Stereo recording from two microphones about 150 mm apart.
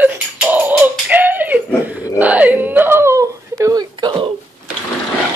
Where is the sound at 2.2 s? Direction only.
10° right (ahead or behind); by 4.3 s 30° right (ahead or behind).